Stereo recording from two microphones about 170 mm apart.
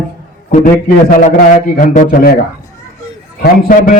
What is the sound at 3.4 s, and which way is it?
Speech, 55° left (ahead or behind).